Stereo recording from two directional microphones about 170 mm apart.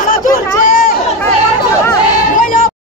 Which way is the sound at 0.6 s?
55° left (ahead or behind).